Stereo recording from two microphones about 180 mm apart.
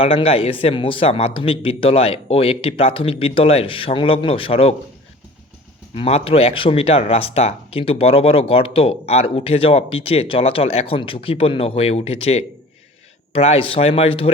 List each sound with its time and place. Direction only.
0.0 s speech: 30° left (ahead or behind)
5.9 s speech: 35° left (ahead or behind)